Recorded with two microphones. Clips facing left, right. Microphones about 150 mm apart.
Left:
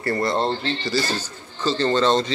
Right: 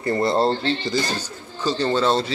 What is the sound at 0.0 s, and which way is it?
A man's voice, 25° right (ahead or behind).